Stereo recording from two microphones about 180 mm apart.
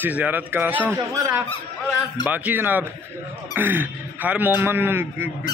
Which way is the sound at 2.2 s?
10° right (ahead or behind).